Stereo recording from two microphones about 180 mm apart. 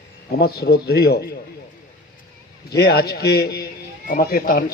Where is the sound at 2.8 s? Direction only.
60° left (ahead or behind).